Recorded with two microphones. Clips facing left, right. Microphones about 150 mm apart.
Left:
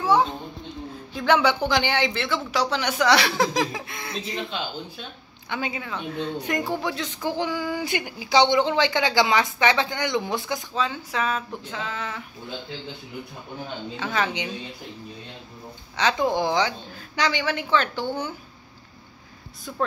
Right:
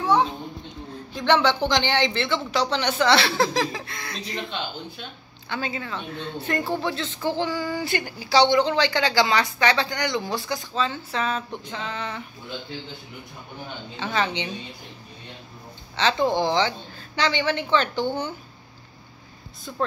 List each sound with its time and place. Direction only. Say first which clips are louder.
0.0 s children playing: even; centre (ahead or behind)
1.1 s a woman's voice: even; 5° left (ahead or behind)
4.1 s a woman's voice: left 2 dB; 5° left (ahead or behind)
13.9 s a woman's voice: right 1 dB; 5° left (ahead or behind)
16.0 s a woman's voice: right 1 dB; 10° left (ahead or behind)